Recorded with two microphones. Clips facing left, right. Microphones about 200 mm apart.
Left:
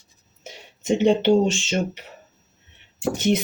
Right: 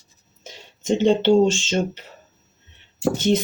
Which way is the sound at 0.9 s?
10° left (ahead or behind).